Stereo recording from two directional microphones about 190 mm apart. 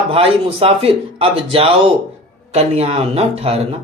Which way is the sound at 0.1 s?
30° right (ahead or behind).